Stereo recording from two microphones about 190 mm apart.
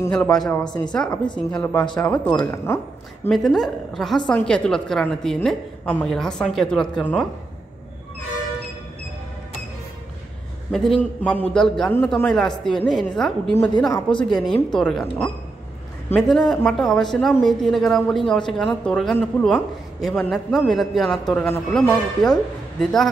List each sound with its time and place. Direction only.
0.0 s speech: 5° left (ahead or behind)
1.1 s a woman's voice: 25° left (ahead or behind)
1.5 s speech: 10° left (ahead or behind)
3.3 s a man's voice: centre (ahead or behind)
10.7 s a man's voice: centre (ahead or behind)